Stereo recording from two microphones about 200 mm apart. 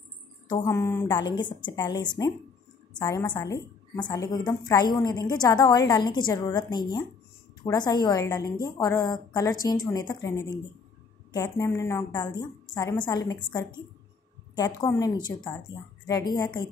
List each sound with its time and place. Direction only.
0.7 s a woman's voice: 15° left (ahead or behind)
14.8 s a woman's voice: 15° left (ahead or behind)